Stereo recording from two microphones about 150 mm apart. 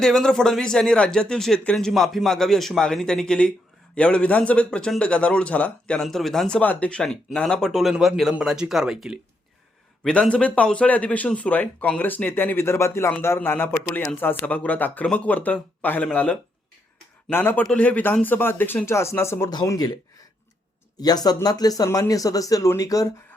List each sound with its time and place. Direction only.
0.0 s a man's voice: centre (ahead or behind); by 19.9 s 25° left (ahead or behind)
21.0 s speech: 25° left (ahead or behind)